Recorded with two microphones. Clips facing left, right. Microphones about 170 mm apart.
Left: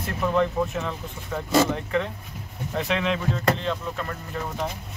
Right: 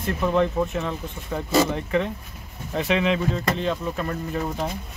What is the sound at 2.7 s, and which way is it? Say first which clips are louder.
Speech: right 3 dB; 5° right (ahead or behind).